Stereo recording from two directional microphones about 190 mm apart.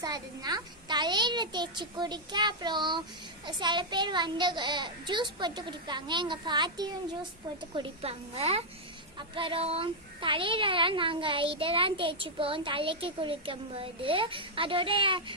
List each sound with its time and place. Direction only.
0.0 s a woman's voice: 20° right (ahead or behind)